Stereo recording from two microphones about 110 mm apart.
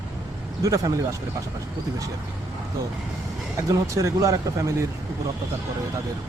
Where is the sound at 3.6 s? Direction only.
30° right (ahead or behind).